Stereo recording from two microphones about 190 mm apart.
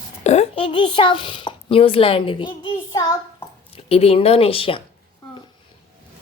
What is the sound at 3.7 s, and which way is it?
Speech, 30° left (ahead or behind).